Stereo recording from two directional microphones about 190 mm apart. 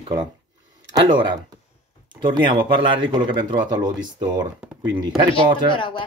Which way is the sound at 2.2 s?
25° right (ahead or behind).